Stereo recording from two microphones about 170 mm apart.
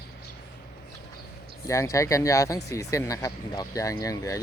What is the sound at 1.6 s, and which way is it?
Speech, 20° left (ahead or behind).